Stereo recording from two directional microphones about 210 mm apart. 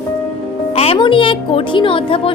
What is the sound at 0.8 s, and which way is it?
A woman's voice, 25° left (ahead or behind).